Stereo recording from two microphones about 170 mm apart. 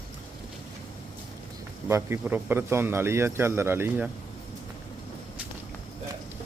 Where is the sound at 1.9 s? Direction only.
10° right (ahead or behind).